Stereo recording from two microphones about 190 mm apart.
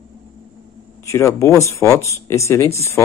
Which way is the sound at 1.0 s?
15° left (ahead or behind).